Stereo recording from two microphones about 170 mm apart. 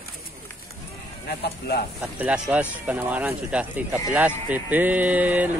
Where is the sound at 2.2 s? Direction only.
10° right (ahead or behind).